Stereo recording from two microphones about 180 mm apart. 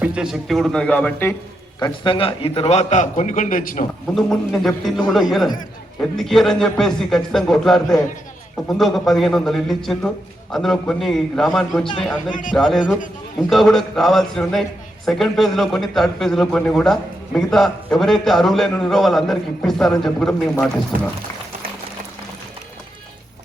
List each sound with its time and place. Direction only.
0.0 s a man's voice: 5° right (ahead or behind)
1.8 s a man's voice: 30° left (ahead or behind); by 3.8 s 50° left (ahead or behind)
4.1 s a man's voice: centre (ahead or behind)
12.3 s a man's voice: 45° left (ahead or behind)
12.5 s a man's voice: centre (ahead or behind)